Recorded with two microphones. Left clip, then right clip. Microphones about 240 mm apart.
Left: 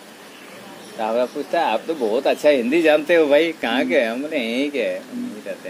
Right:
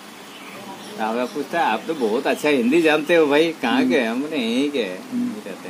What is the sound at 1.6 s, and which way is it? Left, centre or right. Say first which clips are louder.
Speech: even; right.